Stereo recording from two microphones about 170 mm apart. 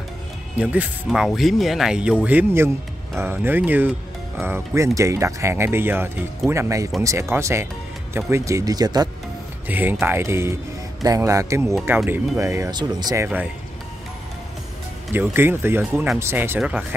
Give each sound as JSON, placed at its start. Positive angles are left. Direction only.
{"t": 0.6, "sound": "speech", "side_deg": -10}
{"t": 9.7, "sound": "speech", "side_deg": -10}
{"t": 15.1, "sound": "speech", "side_deg": -10}